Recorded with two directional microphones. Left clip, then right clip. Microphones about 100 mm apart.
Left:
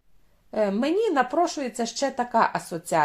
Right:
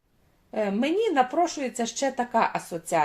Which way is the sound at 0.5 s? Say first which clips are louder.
Left 2 dB; 40° left (ahead or behind).